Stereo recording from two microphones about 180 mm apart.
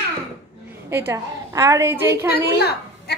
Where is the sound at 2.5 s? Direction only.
65° left (ahead or behind).